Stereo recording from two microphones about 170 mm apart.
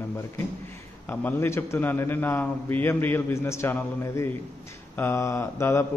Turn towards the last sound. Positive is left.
turn(degrees=15)  # may be behind; listen again after turning